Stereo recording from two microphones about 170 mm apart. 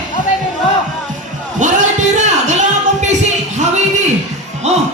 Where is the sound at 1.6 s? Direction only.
45° right (ahead or behind).